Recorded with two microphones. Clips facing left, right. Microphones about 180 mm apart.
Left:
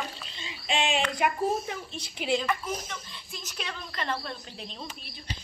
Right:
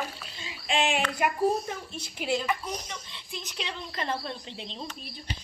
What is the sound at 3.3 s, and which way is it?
Speech, 20° right (ahead or behind).